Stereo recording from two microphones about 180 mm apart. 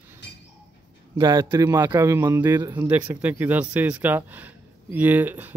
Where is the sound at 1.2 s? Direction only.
20° right (ahead or behind).